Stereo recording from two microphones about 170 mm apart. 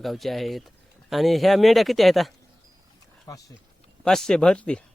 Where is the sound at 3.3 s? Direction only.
20° left (ahead or behind).